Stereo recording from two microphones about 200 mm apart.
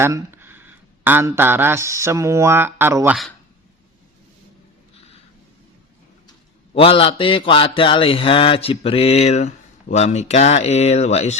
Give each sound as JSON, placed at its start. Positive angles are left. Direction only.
{"t": 0.0, "sound": "speech", "side_deg": -10}
{"t": 6.7, "sound": "mantra", "side_deg": 25}